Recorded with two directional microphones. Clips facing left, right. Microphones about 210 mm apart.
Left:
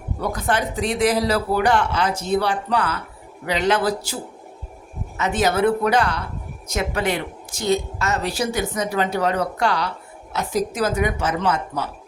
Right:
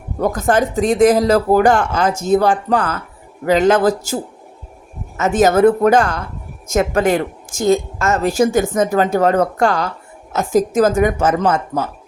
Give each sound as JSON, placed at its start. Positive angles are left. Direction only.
{"t": 0.2, "sound": "a woman's voice", "side_deg": -45}